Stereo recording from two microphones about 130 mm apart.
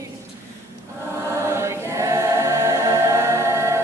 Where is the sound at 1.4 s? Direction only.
20° right (ahead or behind).